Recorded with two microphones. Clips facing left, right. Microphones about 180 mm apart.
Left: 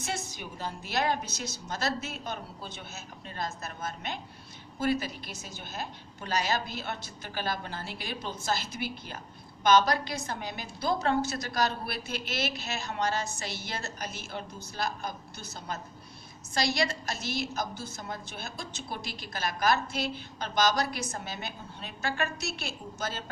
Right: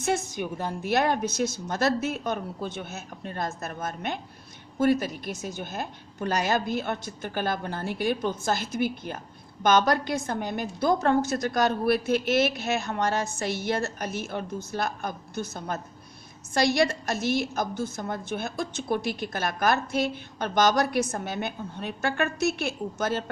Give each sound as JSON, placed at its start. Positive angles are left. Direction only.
{"t": 0.0, "sound": "a woman's voice", "side_deg": -50}